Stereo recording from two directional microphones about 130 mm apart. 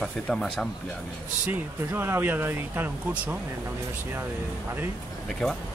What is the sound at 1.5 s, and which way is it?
Speech, 15° right (ahead or behind).